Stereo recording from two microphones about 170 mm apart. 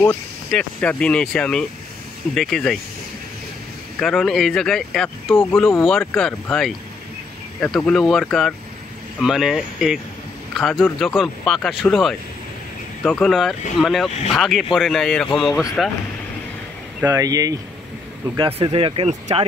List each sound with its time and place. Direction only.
0.0 s speech: 10° left (ahead or behind)
4.0 s speech: centre (ahead or behind)
17.0 s speech: 20° right (ahead or behind)
18.3 s speech: 30° right (ahead or behind)